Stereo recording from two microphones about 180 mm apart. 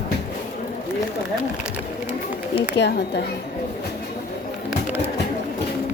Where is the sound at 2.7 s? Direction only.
70° left (ahead or behind).